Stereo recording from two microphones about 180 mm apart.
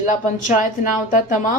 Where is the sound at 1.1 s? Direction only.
45° left (ahead or behind).